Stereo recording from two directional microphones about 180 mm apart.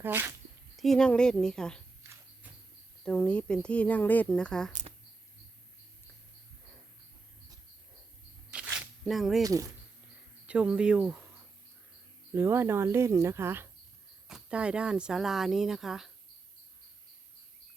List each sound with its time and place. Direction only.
0.0 s speech: 10° right (ahead or behind)
0.8 s speech: 5° left (ahead or behind)
2.0 s a sound: 15° right (ahead or behind)
3.0 s speech: 5° left (ahead or behind)
4.7 s a sound: 40° right (ahead or behind)
8.5 s a sound: 10° right (ahead or behind)
9.0 s speech: centre (ahead or behind)
9.4 s speech: 20° right (ahead or behind)
10.4 s speech: 5° right (ahead or behind)
12.3 s speech: 15° right (ahead or behind)